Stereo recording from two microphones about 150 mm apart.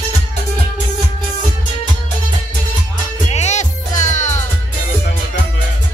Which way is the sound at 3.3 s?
50° left (ahead or behind).